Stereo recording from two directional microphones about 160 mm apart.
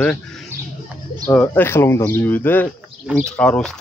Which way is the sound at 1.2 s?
15° left (ahead or behind).